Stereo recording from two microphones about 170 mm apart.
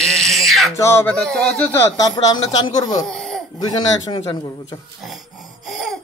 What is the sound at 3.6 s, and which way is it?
Speech, 25° left (ahead or behind).